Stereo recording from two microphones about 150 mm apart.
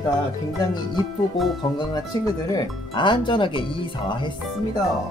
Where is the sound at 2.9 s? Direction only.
35° left (ahead or behind).